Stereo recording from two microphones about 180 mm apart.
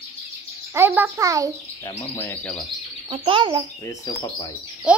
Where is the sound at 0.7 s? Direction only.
10° right (ahead or behind).